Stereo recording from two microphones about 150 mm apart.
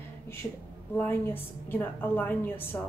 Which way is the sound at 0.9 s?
15° left (ahead or behind).